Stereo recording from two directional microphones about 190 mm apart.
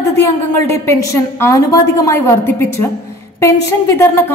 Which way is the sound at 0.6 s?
15° left (ahead or behind).